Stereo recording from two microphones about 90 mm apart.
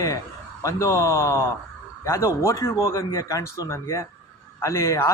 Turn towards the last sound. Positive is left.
turn(degrees=30)  # may be behind; listen again after turning